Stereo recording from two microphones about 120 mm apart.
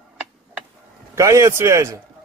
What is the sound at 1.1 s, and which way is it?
Speech, 25° right (ahead or behind).